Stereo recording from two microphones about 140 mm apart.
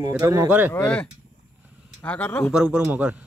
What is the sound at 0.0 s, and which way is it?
Speech, 25° right (ahead or behind).